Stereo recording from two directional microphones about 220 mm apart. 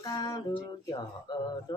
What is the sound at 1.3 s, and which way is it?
Speech, 20° left (ahead or behind).